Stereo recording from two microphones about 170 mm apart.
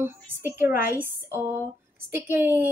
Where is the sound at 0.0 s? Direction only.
15° right (ahead or behind).